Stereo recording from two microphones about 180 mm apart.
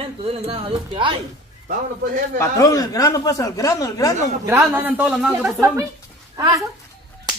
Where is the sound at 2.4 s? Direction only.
20° left (ahead or behind).